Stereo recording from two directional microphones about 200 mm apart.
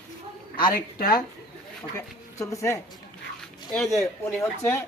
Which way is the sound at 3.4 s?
Centre (ahead or behind).